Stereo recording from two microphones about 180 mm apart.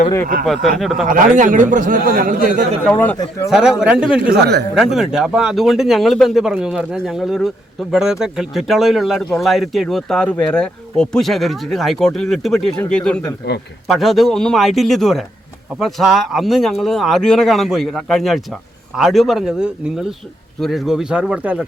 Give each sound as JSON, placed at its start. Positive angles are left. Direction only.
{"t": 0.4, "sound": "speech", "side_deg": 0}
{"t": 1.4, "sound": "speech", "side_deg": -45}
{"t": 3.5, "sound": "speech", "side_deg": -5}
{"t": 4.3, "sound": "speech", "side_deg": -65}
{"t": 4.7, "sound": "speech", "side_deg": 0}